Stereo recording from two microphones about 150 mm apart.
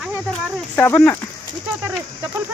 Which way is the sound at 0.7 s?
15° left (ahead or behind).